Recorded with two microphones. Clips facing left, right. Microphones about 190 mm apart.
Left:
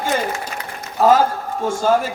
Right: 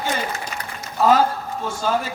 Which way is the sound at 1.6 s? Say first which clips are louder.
Left 8 dB; 45° left (ahead or behind).